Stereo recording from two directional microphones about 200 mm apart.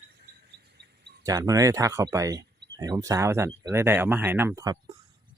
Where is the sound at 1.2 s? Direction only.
15° right (ahead or behind).